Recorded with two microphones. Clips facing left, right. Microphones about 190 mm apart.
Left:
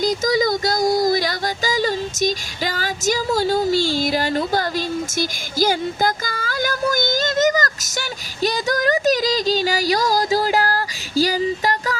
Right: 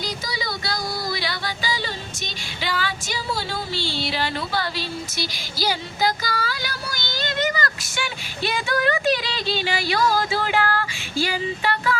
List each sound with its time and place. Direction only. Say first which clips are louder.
0.0 s music: left 12 dB; 45° left (ahead or behind)